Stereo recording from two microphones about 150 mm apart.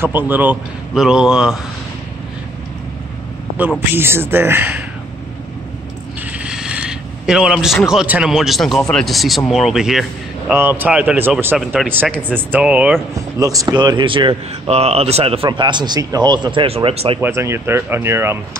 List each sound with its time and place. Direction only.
0.0 s speech: 15° right (ahead or behind)
3.9 s speech: 15° right (ahead or behind)
6.4 s speech: 5° right (ahead or behind)
10.5 s speech: 15° right (ahead or behind)
11.5 s speech: centre (ahead or behind)
12.2 s speech: 10° right (ahead or behind)
13.4 s speech: 25° right (ahead or behind); by 17.2 s 40° right (ahead or behind)
17.2 s speech: 15° right (ahead or behind)